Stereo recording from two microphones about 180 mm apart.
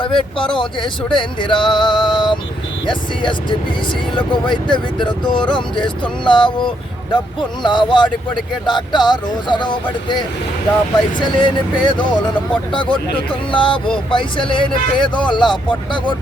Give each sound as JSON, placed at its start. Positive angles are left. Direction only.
{"t": 0.0, "sound": "speech", "side_deg": 30}